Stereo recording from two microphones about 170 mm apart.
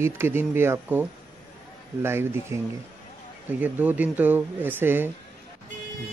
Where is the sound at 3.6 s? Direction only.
10° right (ahead or behind).